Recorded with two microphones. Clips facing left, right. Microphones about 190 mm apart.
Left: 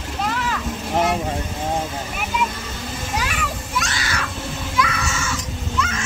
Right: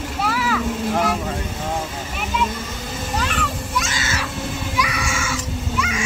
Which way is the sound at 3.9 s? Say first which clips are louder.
Right 1 dB; 25° right (ahead or behind).